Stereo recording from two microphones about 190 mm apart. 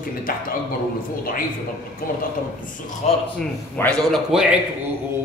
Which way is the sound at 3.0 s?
35° left (ahead or behind).